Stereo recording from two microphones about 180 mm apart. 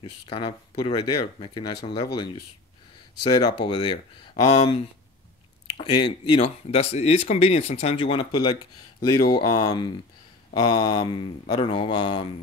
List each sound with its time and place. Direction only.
0.0 s speech: 30° left (ahead or behind)
3.3 s speech: 25° left (ahead or behind)
5.8 s speech: 30° left (ahead or behind)